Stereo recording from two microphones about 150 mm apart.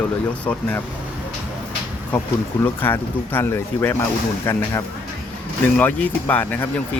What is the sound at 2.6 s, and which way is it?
Speech, 15° left (ahead or behind).